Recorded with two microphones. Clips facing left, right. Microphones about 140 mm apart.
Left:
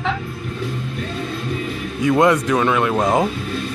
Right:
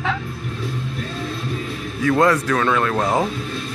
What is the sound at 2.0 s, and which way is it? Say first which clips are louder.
Speech: left 2 dB; 20° left (ahead or behind).